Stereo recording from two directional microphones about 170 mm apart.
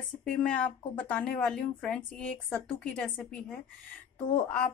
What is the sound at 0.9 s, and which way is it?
A woman's voice, 10° left (ahead or behind).